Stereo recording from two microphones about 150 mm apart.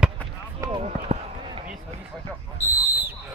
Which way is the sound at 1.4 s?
30° right (ahead or behind).